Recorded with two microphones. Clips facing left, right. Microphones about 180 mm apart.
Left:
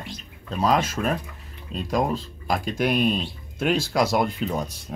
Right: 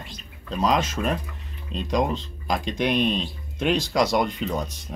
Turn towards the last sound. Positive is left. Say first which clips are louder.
# left 1 dB
turn(degrees=10)  # may be behind; listen again after turning